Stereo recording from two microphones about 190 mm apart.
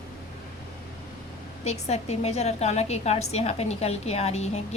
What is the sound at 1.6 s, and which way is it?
A woman's voice, 35° left (ahead or behind).